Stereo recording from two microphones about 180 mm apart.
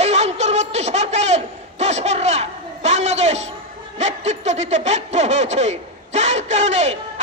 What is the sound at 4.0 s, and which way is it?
Snicker, 40° right (ahead or behind).